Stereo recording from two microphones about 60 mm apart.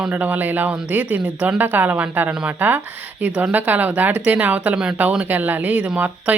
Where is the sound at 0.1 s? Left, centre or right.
Right.